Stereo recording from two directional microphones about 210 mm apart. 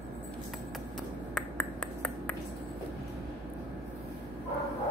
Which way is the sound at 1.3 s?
5° left (ahead or behind).